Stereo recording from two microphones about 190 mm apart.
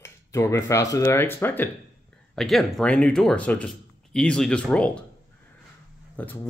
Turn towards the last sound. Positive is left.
turn(degrees=10)  # may be behind; listen again after turning